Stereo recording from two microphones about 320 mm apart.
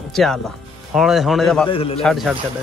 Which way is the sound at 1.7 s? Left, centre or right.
Centre.